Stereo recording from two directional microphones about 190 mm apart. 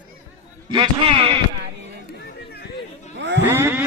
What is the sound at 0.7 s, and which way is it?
Speech, 30° right (ahead or behind).